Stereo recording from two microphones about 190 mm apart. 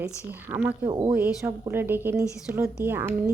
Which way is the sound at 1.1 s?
10° right (ahead or behind).